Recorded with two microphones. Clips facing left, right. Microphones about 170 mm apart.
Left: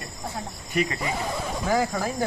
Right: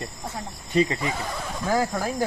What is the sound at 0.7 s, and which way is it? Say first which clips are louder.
Cricket: right 4 dB; 25° right (ahead or behind).